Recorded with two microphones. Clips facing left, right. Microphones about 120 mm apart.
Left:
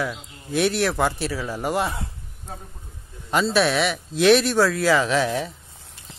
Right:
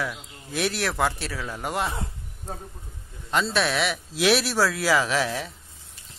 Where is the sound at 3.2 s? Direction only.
5° left (ahead or behind).